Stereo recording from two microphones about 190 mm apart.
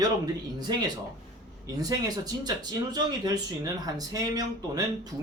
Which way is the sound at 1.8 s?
20° right (ahead or behind).